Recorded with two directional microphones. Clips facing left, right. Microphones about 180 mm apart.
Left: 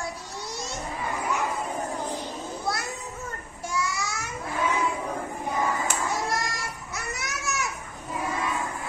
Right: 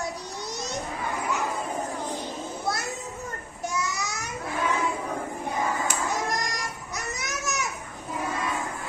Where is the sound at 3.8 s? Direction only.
20° right (ahead or behind).